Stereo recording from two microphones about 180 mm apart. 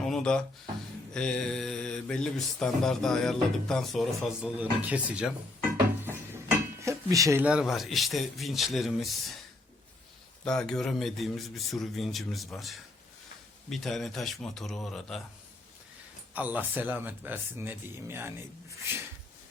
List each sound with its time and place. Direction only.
0.0 s a sound: 5° left (ahead or behind)
1.1 s mantra: 5° left (ahead or behind)
6.8 s mantra: 15° right (ahead or behind); by 9.3 s centre (ahead or behind)
10.4 s mantra: 5° left (ahead or behind)
16.3 s speech: 10° right (ahead or behind)